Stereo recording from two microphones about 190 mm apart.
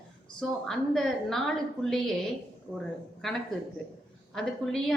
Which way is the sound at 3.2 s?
Centre (ahead or behind).